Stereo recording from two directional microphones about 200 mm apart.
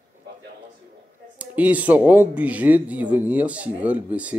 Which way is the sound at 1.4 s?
5° right (ahead or behind).